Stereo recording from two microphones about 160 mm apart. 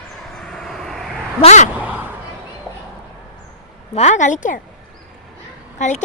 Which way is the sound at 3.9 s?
45° left (ahead or behind).